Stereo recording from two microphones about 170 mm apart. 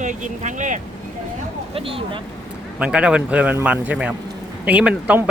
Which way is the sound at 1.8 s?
30° right (ahead or behind).